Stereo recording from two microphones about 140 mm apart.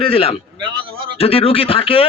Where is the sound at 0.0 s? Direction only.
45° left (ahead or behind).